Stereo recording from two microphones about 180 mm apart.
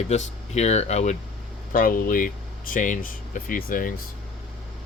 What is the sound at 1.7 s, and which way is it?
Speech, 50° left (ahead or behind).